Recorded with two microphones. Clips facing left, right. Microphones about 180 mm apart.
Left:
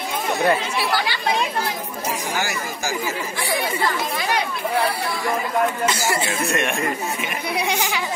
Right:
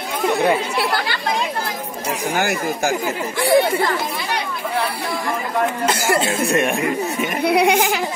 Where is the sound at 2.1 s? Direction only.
55° right (ahead or behind).